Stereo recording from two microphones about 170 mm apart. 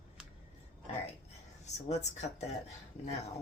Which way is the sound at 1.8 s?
40° left (ahead or behind).